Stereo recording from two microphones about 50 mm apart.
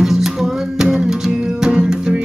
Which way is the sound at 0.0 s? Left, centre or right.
Centre.